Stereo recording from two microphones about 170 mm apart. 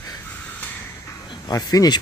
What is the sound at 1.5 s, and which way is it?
Speech, 20° left (ahead or behind).